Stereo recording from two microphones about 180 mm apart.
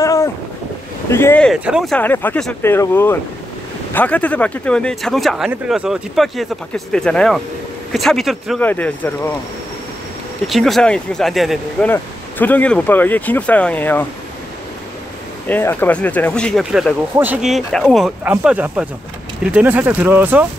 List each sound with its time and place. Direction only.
0.0 s boat: 15° left (ahead or behind)
1.1 s speech: 10° left (ahead or behind)
1.5 s speech: 5° right (ahead or behind)
2.0 s speech: 10° left (ahead or behind)
10.4 s speech: centre (ahead or behind)
11.9 s speech: 10° left (ahead or behind)
15.4 s speech: 10° left (ahead or behind); by 20.4 s 10° right (ahead or behind)